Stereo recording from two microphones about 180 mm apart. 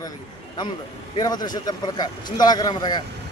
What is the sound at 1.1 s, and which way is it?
Speech, 20° left (ahead or behind).